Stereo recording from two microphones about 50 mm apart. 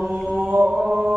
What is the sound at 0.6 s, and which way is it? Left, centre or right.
Mantra, centre.